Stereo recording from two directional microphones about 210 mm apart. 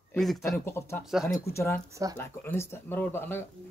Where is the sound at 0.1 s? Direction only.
Centre (ahead or behind).